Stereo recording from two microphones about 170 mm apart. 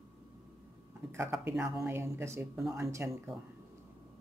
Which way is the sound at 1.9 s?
15° right (ahead or behind).